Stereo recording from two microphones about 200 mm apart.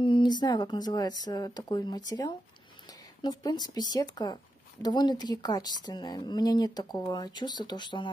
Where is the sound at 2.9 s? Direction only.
20° left (ahead or behind).